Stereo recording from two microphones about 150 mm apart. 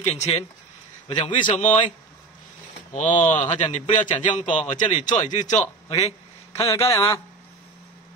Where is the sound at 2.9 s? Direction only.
55° left (ahead or behind).